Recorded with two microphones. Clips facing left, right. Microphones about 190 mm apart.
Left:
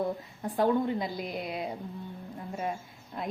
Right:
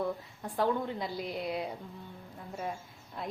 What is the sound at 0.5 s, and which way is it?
Speech, 15° left (ahead or behind).